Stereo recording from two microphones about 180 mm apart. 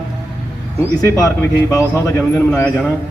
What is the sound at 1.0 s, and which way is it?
A man's voice, 20° left (ahead or behind).